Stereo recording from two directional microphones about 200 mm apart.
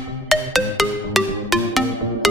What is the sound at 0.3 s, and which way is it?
Music, centre (ahead or behind).